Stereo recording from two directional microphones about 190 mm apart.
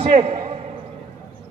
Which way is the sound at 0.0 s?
30° right (ahead or behind).